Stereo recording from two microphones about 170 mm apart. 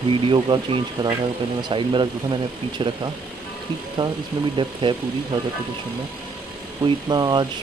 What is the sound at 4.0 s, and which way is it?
Speech, 25° right (ahead or behind).